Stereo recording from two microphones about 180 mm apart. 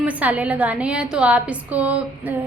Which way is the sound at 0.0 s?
10° right (ahead or behind).